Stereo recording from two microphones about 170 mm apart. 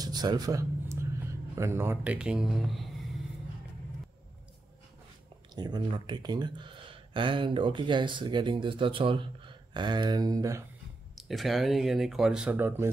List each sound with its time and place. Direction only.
0.0 s a sound: 25° right (ahead or behind)
1.5 s speech: 15° right (ahead or behind)
5.5 s speech: 25° right (ahead or behind)
11.1 s speech: centre (ahead or behind)